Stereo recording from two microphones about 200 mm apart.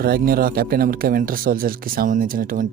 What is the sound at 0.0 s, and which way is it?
Speech, 50° right (ahead or behind).